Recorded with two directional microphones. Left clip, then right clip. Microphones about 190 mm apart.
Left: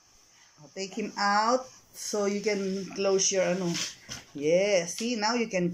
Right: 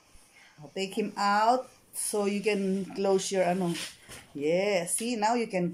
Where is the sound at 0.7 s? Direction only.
20° right (ahead or behind).